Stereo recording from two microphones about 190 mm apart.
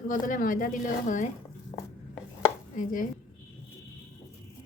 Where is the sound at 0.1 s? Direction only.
45° left (ahead or behind).